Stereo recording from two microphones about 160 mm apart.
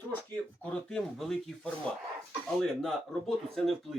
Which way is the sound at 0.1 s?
10° left (ahead or behind).